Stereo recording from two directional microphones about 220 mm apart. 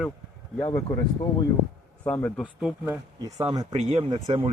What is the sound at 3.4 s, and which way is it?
Speech, 15° right (ahead or behind).